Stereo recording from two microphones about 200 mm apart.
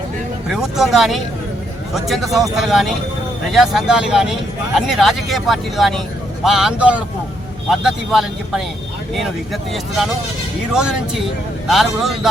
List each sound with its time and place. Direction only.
0.5 s speech: centre (ahead or behind)